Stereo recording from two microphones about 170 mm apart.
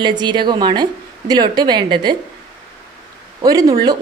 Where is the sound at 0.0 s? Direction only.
25° right (ahead or behind).